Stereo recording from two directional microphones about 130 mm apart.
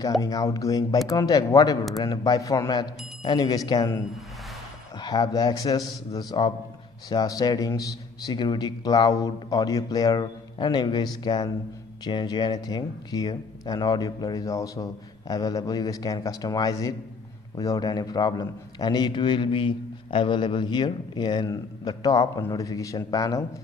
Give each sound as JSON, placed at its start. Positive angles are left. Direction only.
{"t": 0.2, "sound": "speech", "side_deg": 25}
{"t": 4.9, "sound": "a man's voice", "side_deg": 30}